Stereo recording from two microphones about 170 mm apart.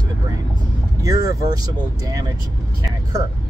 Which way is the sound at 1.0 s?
20° right (ahead or behind).